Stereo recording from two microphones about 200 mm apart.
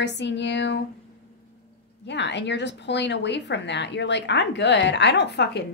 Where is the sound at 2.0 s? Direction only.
60° left (ahead or behind).